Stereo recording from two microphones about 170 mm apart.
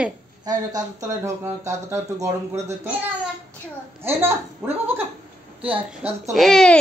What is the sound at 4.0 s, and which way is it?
A child's voice, 15° right (ahead or behind).